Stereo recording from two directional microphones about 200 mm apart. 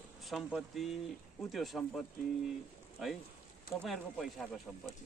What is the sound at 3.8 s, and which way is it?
Speech, centre (ahead or behind).